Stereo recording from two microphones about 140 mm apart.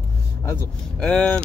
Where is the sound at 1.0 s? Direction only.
5° left (ahead or behind).